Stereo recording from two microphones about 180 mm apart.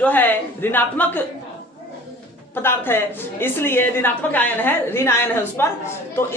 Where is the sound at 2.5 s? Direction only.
15° left (ahead or behind).